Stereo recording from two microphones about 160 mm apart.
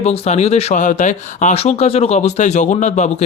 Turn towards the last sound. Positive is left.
turn(degrees=45)  # may be behind; listen again after turning